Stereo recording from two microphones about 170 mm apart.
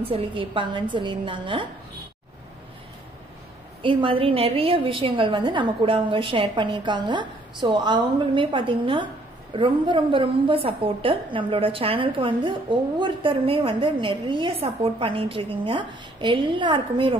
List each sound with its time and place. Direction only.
0.1 s a woman's voice: 30° right (ahead or behind)
3.8 s a woman's voice: 30° right (ahead or behind)